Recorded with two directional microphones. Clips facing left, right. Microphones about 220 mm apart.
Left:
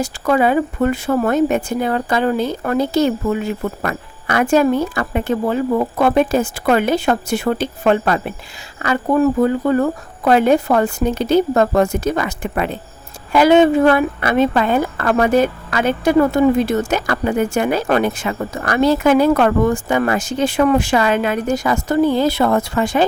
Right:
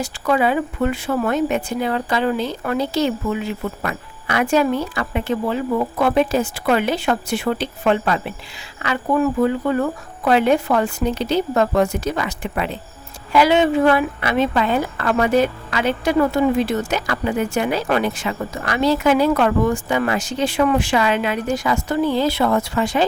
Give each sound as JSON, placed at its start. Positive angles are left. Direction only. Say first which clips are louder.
{"t": 0.0, "sound": "a woman's voice", "louder": "left 3 dB", "side_deg": 45}